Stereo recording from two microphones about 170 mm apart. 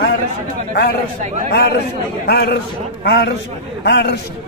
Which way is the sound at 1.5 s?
75° left (ahead or behind).